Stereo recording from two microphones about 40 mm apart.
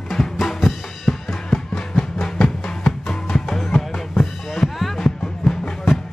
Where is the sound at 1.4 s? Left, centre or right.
Centre.